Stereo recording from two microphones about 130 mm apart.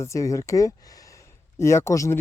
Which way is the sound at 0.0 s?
25° left (ahead or behind).